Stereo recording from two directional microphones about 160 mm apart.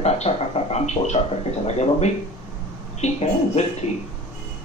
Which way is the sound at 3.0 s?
45° left (ahead or behind).